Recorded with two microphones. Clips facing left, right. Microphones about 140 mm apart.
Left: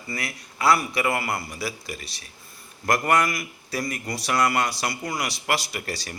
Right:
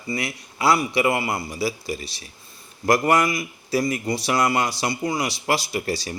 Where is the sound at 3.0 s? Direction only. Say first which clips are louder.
Right 3 dB; 20° right (ahead or behind).